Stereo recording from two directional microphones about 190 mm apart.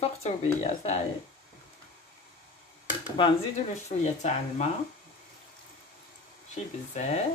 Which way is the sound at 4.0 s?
35° left (ahead or behind).